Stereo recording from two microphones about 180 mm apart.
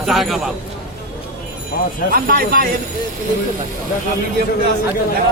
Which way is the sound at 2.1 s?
55° right (ahead or behind).